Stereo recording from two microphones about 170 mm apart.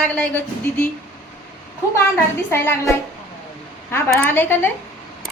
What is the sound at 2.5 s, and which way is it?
Speech, 15° left (ahead or behind).